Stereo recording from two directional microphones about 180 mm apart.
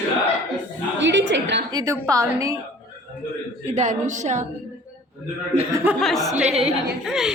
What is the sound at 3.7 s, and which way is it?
Speech, 45° right (ahead or behind).